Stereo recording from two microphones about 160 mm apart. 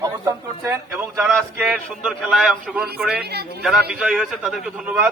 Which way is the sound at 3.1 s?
90° right.